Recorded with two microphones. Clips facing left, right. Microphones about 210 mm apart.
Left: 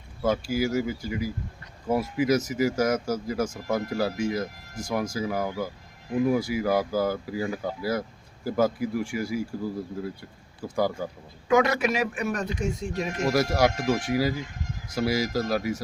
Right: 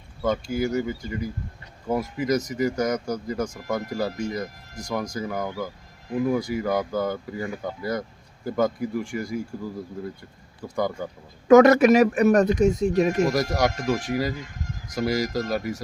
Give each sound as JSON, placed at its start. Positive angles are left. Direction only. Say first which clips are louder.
{"t": 0.2, "sound": "speech", "louder": "even", "side_deg": 5}
{"t": 10.8, "sound": "speech", "louder": "even", "side_deg": 5}
{"t": 11.4, "sound": "speech", "louder": "right 9 dB", "side_deg": -45}
{"t": 13.3, "sound": "speech", "louder": "left 1 dB", "side_deg": 5}